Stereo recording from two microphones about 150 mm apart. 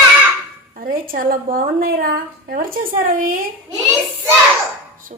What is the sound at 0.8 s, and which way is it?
A woman's voice, 70° right (ahead or behind).